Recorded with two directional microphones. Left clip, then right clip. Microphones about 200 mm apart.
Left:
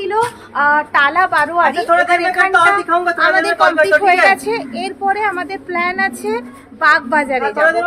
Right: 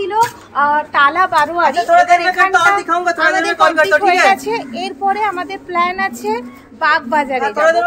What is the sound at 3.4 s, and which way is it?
Speech, 40° right (ahead or behind).